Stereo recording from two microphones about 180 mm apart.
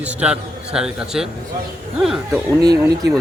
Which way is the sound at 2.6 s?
20° right (ahead or behind).